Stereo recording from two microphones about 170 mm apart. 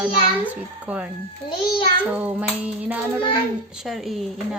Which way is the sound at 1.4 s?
30° left (ahead or behind).